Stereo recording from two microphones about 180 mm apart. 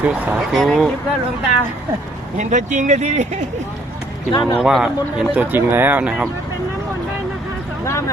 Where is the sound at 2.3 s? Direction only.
45° right (ahead or behind).